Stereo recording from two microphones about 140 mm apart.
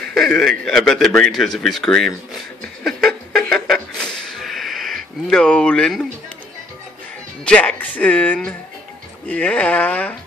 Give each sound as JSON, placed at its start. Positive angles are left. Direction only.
{"t": 0.1, "sound": "a man's voice", "side_deg": 0}
{"t": 2.8, "sound": "a sound", "side_deg": 0}
{"t": 7.4, "sound": "speech", "side_deg": 10}